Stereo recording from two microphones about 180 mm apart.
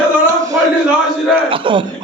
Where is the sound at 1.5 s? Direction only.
30° right (ahead or behind).